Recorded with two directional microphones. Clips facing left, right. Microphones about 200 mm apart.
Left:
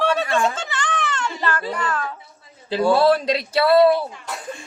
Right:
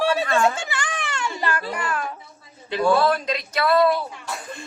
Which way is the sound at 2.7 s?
25° left (ahead or behind).